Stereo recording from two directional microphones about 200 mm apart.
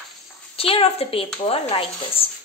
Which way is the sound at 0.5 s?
30° left (ahead or behind).